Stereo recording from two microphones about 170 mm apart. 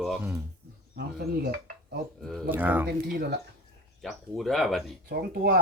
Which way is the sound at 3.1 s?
65° right (ahead or behind).